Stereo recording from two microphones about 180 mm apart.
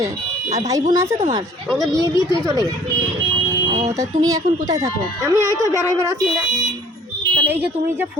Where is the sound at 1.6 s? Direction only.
Centre (ahead or behind).